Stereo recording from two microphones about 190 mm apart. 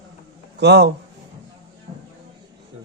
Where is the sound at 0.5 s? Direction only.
60° right (ahead or behind).